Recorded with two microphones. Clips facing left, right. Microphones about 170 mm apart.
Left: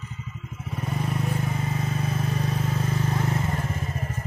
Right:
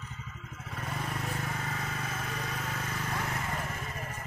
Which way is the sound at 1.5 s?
20° left (ahead or behind).